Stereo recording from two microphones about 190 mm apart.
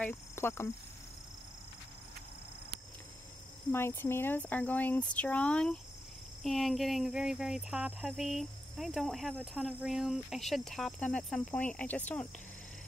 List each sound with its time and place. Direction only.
0.0 s speech: 10° left (ahead or behind)
3.7 s speech: 10° left (ahead or behind)